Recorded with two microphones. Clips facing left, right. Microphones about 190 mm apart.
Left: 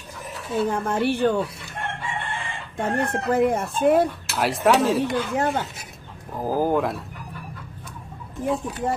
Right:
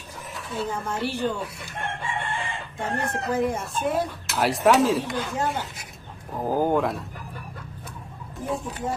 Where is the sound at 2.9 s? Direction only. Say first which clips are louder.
Left 4 dB; 60° left (ahead or behind).